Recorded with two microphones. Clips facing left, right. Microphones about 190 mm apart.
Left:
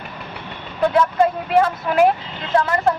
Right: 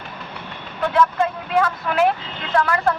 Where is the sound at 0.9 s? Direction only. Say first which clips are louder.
Left 1 dB; 35° left (ahead or behind).